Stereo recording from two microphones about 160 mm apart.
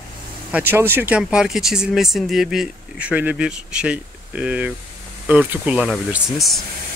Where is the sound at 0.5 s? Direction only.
10° right (ahead or behind).